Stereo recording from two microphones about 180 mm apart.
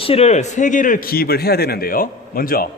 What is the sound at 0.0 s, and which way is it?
A man's voice, 35° left (ahead or behind).